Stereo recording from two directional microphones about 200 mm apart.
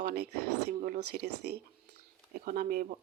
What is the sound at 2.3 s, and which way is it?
Speech, 45° right (ahead or behind).